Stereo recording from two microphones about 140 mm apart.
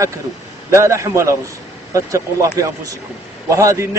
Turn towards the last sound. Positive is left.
turn(degrees=-20)  # may be behind; listen again after turning